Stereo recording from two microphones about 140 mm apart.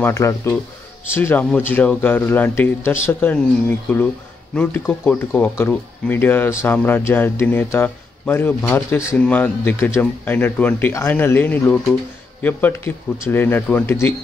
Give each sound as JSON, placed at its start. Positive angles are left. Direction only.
{"t": 0.0, "sound": "a man's voice", "side_deg": 20}